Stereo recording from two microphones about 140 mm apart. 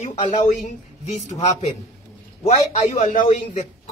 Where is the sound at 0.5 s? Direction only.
55° left (ahead or behind).